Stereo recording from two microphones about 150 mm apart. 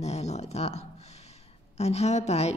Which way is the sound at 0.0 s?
45° left (ahead or behind).